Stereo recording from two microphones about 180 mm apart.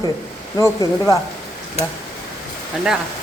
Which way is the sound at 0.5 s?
20° left (ahead or behind).